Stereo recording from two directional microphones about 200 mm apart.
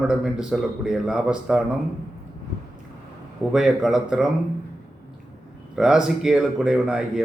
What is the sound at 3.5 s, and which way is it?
Speech, centre (ahead or behind).